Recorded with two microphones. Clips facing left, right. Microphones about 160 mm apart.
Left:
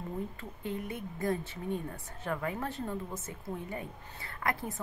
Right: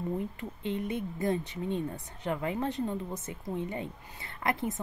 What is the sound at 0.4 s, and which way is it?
Speech, 20° right (ahead or behind).